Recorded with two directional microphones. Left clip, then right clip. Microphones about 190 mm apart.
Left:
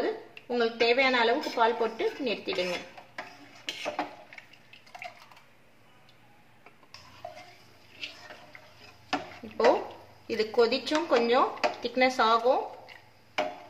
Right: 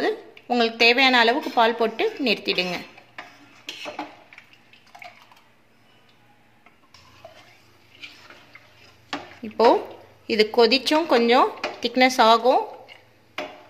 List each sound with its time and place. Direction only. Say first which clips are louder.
0.0 s a woman's voice: right 6 dB; 55° right (ahead or behind)
9.4 s speech: right 7 dB; 50° right (ahead or behind)